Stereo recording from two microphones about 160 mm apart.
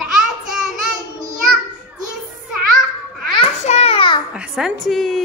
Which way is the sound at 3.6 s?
40° left (ahead or behind).